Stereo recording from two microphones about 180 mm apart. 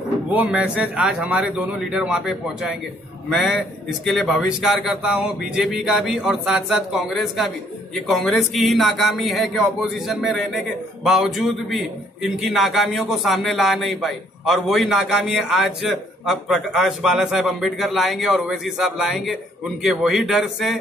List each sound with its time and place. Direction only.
0.3 s speech: 10° right (ahead or behind)